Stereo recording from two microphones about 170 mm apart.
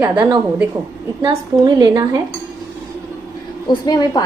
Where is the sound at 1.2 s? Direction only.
25° right (ahead or behind).